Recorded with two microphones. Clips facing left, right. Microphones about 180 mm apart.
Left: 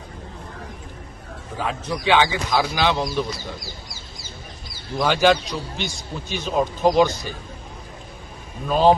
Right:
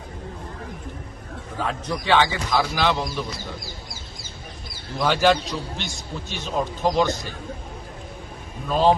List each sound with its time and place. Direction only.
1.5 s speech: centre (ahead or behind)
4.9 s speech: centre (ahead or behind)
8.7 s speech: 5° left (ahead or behind)